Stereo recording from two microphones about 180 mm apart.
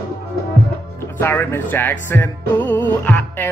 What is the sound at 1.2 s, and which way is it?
Music, 10° left (ahead or behind).